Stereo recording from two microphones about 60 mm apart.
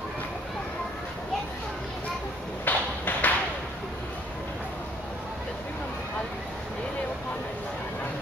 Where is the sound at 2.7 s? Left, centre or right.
Left.